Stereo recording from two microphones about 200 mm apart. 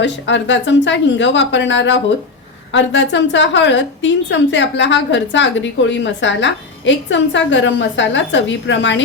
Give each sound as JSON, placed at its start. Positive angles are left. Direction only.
{"t": 0.0, "sound": "a woman's voice", "side_deg": 65}